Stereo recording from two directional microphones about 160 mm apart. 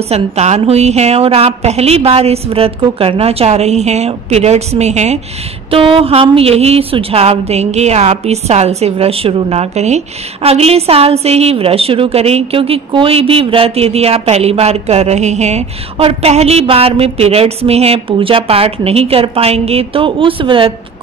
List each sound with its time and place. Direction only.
0.1 s a woman's voice: 40° right (ahead or behind)